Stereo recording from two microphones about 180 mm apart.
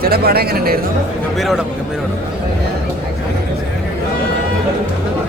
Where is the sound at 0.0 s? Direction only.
60° right (ahead or behind).